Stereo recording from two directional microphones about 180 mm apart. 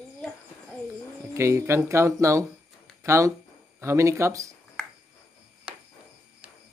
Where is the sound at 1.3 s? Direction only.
15° right (ahead or behind).